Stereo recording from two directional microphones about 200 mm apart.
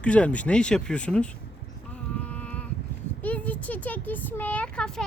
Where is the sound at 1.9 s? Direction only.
5° left (ahead or behind).